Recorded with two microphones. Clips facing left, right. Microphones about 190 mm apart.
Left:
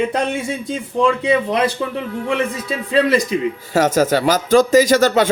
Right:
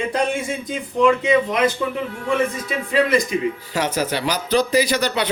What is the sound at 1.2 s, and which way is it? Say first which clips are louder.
Speech: left 1 dB; 30° left (ahead or behind).